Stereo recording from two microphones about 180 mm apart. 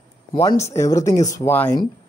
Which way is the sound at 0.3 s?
20° left (ahead or behind).